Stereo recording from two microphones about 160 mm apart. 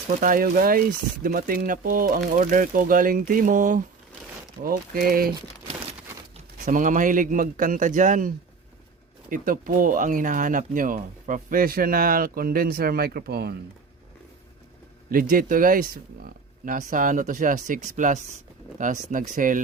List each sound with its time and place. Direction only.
0.2 s speech: 60° right (ahead or behind)
4.6 s speech: 65° right (ahead or behind)
6.7 s speech: 55° right (ahead or behind)
9.3 s speech: 55° right (ahead or behind); by 13.6 s 80° right
15.1 s speech: 60° right (ahead or behind)